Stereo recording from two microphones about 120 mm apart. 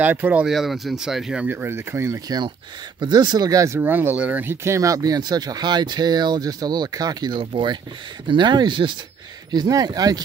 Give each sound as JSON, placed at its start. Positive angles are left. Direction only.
{"t": 0.0, "sound": "speech", "side_deg": -15}
{"t": 0.5, "sound": "speech", "side_deg": 0}
{"t": 2.2, "sound": "speech", "side_deg": -35}